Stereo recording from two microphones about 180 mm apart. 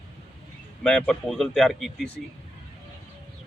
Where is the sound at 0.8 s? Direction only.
5° left (ahead or behind).